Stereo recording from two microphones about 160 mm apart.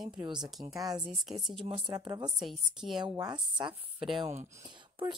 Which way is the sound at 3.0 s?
25° right (ahead or behind).